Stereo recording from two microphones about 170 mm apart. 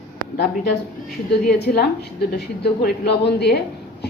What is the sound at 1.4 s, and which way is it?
A woman's voice, 70° left (ahead or behind).